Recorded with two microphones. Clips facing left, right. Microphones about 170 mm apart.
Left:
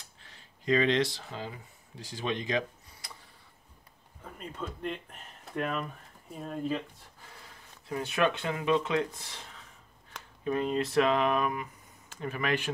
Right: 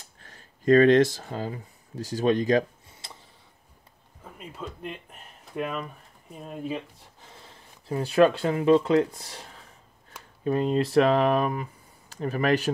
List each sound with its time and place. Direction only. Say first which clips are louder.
0.2 s speech: right 12 dB; 50° right (ahead or behind)
3.0 s a sound: right 3 dB; 25° right (ahead or behind)
4.2 s speech: right 1 dB; 5° right (ahead or behind)
7.4 s speech: right 6 dB; 30° right (ahead or behind)
10.4 s mantra: right 5 dB; 35° right (ahead or behind)